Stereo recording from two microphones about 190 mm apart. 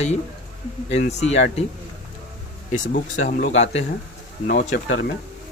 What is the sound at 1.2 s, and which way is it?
Speech, 35° left (ahead or behind).